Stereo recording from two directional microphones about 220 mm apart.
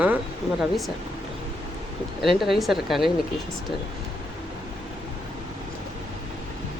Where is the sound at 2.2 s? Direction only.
Centre (ahead or behind).